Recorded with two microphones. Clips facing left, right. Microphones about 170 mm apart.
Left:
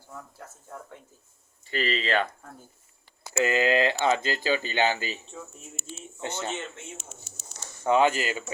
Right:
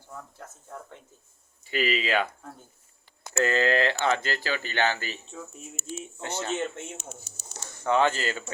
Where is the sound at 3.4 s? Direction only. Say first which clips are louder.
Left 1 dB; 15° left (ahead or behind).